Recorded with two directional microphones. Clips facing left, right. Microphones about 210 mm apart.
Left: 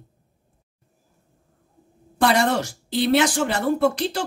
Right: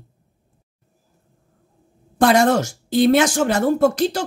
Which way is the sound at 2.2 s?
45° right (ahead or behind).